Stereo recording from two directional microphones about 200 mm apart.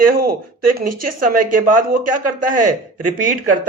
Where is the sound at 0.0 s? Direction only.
45° right (ahead or behind).